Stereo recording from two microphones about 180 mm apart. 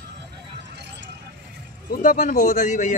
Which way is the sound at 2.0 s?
45° left (ahead or behind).